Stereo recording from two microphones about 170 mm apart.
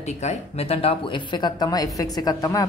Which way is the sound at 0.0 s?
40° left (ahead or behind).